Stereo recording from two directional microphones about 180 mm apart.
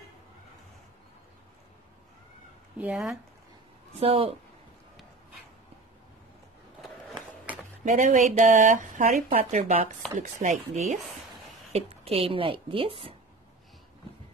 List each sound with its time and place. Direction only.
2.8 s speech: 5° right (ahead or behind)
4.0 s a woman's voice: 30° right (ahead or behind)
7.8 s a woman's voice: 45° right (ahead or behind)